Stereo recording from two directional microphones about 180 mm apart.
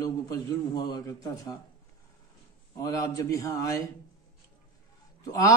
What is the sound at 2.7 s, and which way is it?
A man's voice, 20° left (ahead or behind).